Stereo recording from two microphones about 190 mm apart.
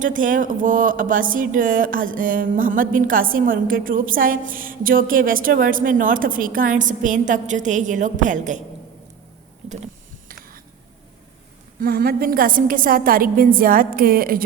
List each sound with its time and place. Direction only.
0.0 s speech: 45° right (ahead or behind)
11.8 s speech: 50° right (ahead or behind)